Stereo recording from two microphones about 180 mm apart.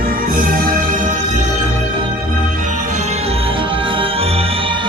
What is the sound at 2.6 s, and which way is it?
Music, 45° right (ahead or behind).